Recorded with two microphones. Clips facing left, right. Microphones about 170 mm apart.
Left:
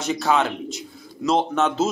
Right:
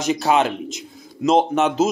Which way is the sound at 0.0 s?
20° right (ahead or behind).